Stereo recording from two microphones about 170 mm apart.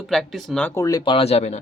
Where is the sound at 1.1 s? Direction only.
35° left (ahead or behind).